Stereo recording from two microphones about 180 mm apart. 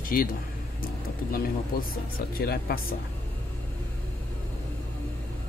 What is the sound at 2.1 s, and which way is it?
Speech, 55° left (ahead or behind).